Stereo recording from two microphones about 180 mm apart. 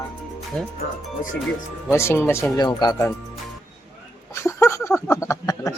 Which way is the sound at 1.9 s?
15° left (ahead or behind).